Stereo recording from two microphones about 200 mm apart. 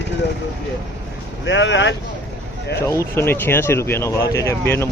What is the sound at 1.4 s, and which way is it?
Speech, 65° left (ahead or behind).